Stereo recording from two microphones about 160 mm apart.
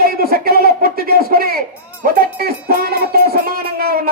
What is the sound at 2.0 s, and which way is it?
Music, 70° right (ahead or behind).